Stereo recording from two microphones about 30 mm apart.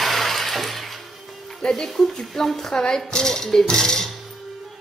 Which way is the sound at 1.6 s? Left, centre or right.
Left.